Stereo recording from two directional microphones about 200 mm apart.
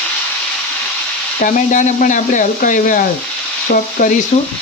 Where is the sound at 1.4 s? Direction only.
40° left (ahead or behind).